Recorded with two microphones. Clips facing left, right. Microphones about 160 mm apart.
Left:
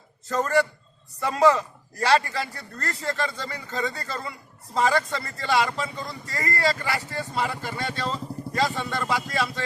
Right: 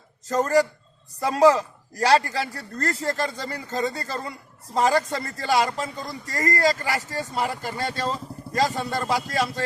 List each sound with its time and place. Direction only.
0.3 s speech: 40° right (ahead or behind)